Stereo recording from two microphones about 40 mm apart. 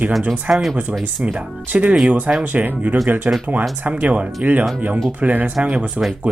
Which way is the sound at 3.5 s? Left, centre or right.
Right.